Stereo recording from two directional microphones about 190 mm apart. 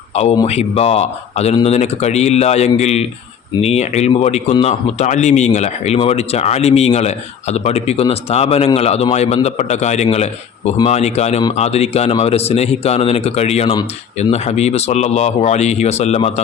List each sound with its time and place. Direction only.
0.4 s speech: 35° left (ahead or behind)